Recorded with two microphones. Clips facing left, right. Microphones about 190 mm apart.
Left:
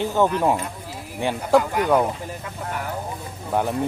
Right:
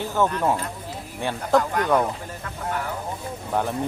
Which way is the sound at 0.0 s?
15° left (ahead or behind).